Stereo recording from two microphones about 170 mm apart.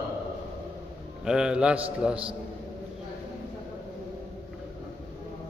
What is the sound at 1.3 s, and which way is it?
Speech, 5° right (ahead or behind).